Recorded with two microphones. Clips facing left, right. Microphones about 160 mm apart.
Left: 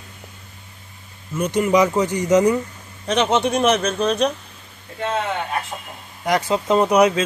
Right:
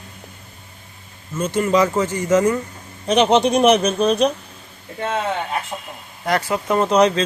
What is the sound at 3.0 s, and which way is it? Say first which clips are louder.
Speech: right 4 dB; 10° right (ahead or behind).